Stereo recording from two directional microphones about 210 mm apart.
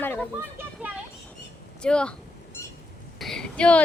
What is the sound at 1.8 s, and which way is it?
Speech, 5° left (ahead or behind).